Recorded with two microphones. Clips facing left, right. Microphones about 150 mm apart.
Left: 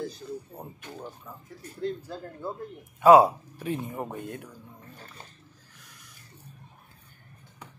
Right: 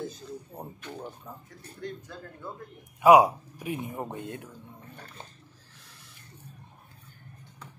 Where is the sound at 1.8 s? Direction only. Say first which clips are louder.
Left 6 dB; 30° left (ahead or behind).